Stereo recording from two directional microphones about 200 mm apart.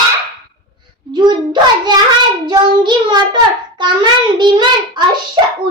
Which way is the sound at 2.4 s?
20° right (ahead or behind).